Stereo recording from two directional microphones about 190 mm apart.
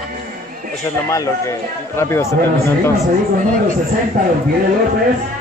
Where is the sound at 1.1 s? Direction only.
15° left (ahead or behind).